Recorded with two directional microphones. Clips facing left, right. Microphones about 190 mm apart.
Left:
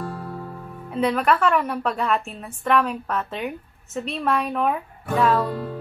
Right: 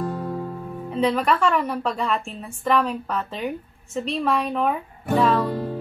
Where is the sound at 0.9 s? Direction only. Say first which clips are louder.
Even; 5° left (ahead or behind).